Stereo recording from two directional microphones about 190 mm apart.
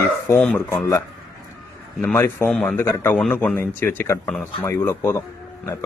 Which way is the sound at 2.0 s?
10° left (ahead or behind).